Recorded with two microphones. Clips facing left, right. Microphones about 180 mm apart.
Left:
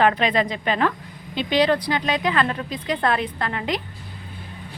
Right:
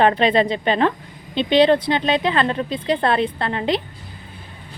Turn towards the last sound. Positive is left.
turn(degrees=-30)  # may be behind; listen again after turning